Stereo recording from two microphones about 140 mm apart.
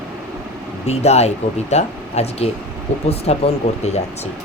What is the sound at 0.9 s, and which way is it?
Speech, 50° left (ahead or behind).